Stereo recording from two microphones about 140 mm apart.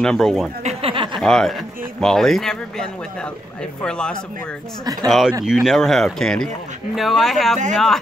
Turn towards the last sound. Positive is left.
turn(degrees=0)  # may be behind; listen again after turning